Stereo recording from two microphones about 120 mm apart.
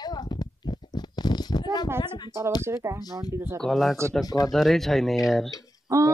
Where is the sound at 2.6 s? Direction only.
25° right (ahead or behind).